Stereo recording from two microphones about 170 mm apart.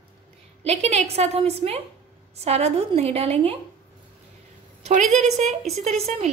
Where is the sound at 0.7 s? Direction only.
40° right (ahead or behind).